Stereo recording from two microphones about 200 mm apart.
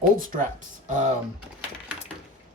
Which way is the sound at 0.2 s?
40° right (ahead or behind).